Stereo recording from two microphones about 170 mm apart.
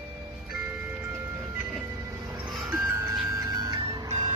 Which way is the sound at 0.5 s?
10° right (ahead or behind).